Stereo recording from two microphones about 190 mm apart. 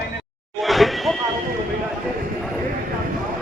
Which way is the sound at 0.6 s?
Centre (ahead or behind).